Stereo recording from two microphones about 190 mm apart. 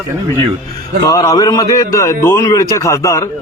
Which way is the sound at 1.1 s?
15° left (ahead or behind).